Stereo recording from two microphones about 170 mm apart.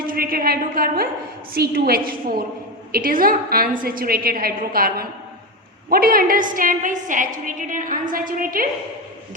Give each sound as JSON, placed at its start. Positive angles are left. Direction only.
{"t": 0.0, "sound": "a woman's voice", "side_deg": -60}